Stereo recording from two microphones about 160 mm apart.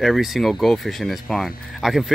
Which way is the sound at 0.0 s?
Centre (ahead or behind).